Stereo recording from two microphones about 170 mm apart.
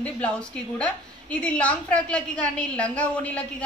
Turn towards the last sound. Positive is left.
turn(degrees=5)  # may be behind; listen again after turning